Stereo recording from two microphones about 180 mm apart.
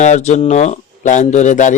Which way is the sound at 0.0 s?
40° left (ahead or behind).